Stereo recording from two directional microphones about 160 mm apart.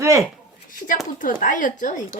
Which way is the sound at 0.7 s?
55° left (ahead or behind).